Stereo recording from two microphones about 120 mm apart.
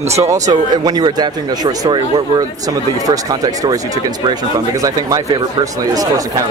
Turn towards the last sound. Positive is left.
turn(degrees=-30)  # may be behind; listen again after turning